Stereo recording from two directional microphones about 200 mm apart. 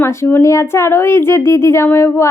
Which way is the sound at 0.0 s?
15° left (ahead or behind).